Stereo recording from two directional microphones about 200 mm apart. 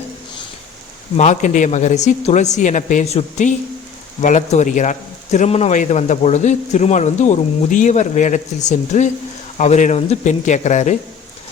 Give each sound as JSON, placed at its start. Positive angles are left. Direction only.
{"t": 1.1, "sound": "speech", "side_deg": 35}